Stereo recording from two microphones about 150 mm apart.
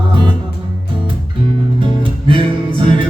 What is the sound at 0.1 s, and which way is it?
Music, 35° right (ahead or behind).